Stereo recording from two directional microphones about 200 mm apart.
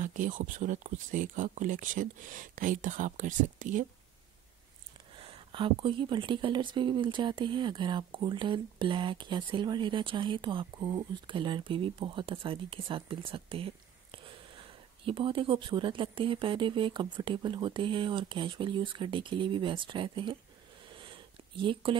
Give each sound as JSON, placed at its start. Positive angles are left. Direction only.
{"t": 0.0, "sound": "speech", "side_deg": -40}
{"t": 5.1, "sound": "speech", "side_deg": -25}
{"t": 20.9, "sound": "a sound", "side_deg": -25}